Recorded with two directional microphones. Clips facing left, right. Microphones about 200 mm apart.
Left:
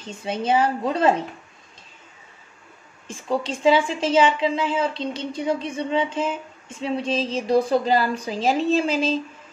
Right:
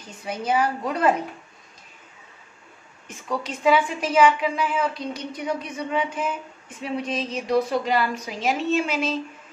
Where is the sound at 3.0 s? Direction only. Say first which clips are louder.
Left 4 dB; 30° left (ahead or behind).